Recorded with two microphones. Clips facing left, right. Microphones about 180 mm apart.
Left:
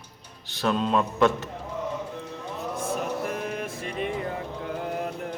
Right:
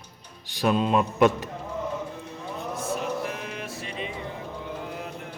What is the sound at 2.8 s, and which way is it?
Music, 45° left (ahead or behind).